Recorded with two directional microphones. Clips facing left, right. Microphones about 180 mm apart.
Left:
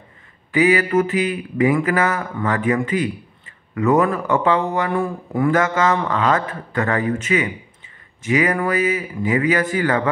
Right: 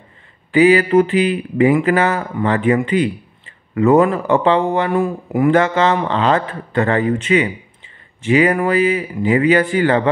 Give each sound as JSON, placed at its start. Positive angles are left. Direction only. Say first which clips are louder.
{"t": 0.5, "sound": "a man's voice", "louder": "right 5 dB", "side_deg": -30}